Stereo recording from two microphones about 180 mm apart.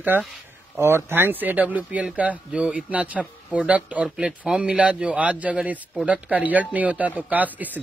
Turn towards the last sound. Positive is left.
turn(degrees=-10)  # may be behind; listen again after turning